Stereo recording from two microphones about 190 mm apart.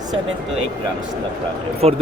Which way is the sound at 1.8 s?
35° right (ahead or behind).